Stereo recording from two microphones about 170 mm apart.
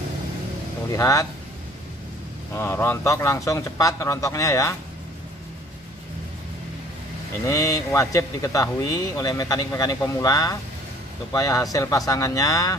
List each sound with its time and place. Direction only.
0.9 s a man's voice: 20° left (ahead or behind)
2.5 s speech: 15° left (ahead or behind)
7.4 s a man's voice: 20° left (ahead or behind)